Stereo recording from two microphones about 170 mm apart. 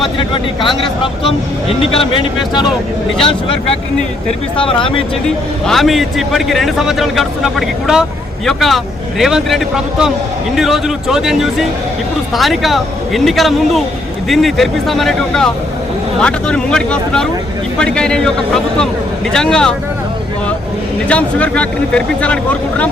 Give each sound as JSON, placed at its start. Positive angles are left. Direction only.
{"t": 0.0, "sound": "speech", "side_deg": 30}
{"t": 1.8, "sound": "speech", "side_deg": 30}
{"t": 4.5, "sound": "speech", "side_deg": 30}
{"t": 5.6, "sound": "a man's voice", "side_deg": 0}
{"t": 21.1, "sound": "speech", "side_deg": 5}